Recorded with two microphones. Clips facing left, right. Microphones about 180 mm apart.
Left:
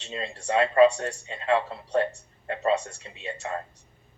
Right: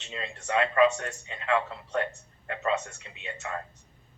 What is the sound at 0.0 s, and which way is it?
A man's voice, 30° left (ahead or behind).